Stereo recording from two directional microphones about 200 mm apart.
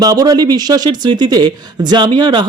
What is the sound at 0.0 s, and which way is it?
Speech, 20° right (ahead or behind).